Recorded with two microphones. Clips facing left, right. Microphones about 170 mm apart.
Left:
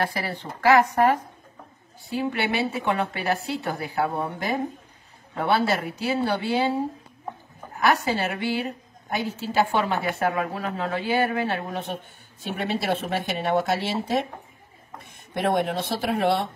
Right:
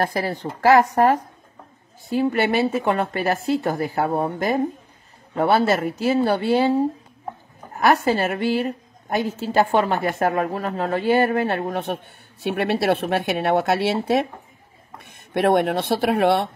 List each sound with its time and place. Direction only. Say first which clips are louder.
0.0 s speech: right 5 dB; 45° right (ahead or behind)
7.7 s a woman's voice: right 4 dB; 50° right (ahead or behind)